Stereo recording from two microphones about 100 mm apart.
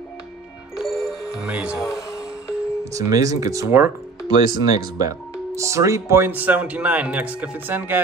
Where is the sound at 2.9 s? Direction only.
35° right (ahead or behind).